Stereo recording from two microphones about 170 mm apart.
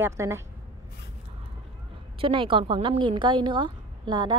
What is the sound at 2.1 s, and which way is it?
A woman's voice, 30° right (ahead or behind).